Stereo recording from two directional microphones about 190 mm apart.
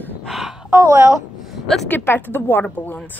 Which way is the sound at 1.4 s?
Centre (ahead or behind).